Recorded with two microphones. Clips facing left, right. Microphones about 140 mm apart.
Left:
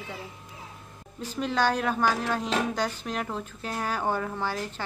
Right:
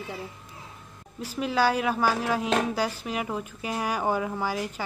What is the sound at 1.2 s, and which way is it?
A woman's voice, 10° right (ahead or behind).